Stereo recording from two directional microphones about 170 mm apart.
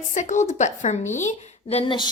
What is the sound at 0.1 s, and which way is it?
A woman's voice, 45° left (ahead or behind).